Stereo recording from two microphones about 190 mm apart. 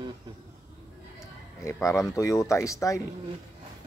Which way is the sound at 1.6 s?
15° left (ahead or behind).